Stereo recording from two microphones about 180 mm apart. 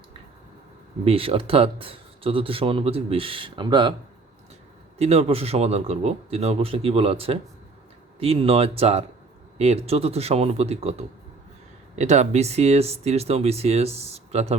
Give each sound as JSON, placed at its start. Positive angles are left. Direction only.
{"t": 1.0, "sound": "speech", "side_deg": -30}
{"t": 4.9, "sound": "speech", "side_deg": -35}